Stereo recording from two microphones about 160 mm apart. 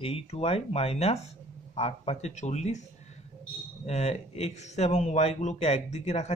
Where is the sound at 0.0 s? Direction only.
40° left (ahead or behind).